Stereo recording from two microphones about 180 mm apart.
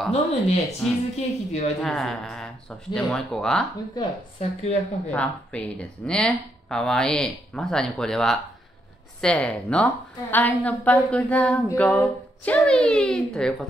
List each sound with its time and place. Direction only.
0.1 s a woman's voice: 35° left (ahead or behind)
0.8 s speech: centre (ahead or behind)
1.1 s a woman's voice: 35° left (ahead or behind)
1.8 s speech: centre (ahead or behind)
3.9 s a woman's voice: 30° left (ahead or behind)
5.1 s speech: 5° left (ahead or behind)